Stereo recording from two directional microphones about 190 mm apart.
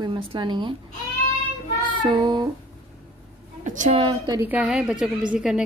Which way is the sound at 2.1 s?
25° right (ahead or behind).